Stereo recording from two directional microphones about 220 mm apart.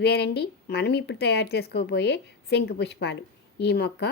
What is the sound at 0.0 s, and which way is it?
Speech, 50° left (ahead or behind).